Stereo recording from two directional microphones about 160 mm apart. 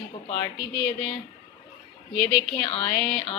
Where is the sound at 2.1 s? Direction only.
5° left (ahead or behind).